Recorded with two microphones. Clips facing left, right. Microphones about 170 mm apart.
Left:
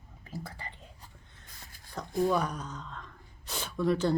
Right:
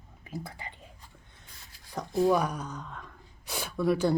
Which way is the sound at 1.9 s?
10° right (ahead or behind).